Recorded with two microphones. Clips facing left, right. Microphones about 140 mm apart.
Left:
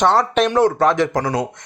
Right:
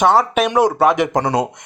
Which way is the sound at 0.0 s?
5° right (ahead or behind).